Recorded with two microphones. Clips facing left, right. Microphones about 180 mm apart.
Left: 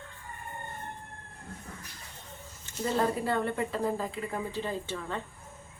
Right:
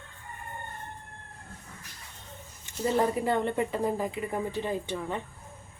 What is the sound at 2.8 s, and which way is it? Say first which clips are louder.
A woman's voice: right 3 dB; 20° right (ahead or behind).